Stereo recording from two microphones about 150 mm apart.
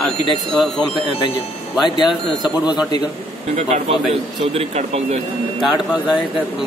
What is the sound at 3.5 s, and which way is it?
Speech, 45° right (ahead or behind).